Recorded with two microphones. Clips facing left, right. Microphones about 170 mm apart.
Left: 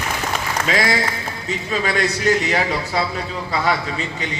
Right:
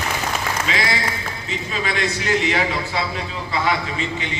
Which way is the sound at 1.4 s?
40° left (ahead or behind).